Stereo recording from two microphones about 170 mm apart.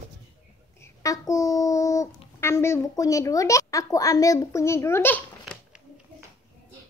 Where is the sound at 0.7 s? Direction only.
20° left (ahead or behind).